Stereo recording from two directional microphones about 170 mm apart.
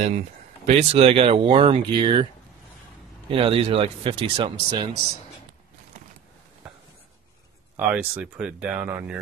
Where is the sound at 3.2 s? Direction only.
35° right (ahead or behind).